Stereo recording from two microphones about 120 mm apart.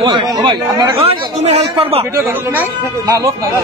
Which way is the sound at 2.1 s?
15° right (ahead or behind).